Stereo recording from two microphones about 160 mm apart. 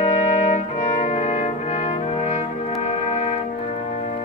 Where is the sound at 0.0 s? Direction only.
45° left (ahead or behind).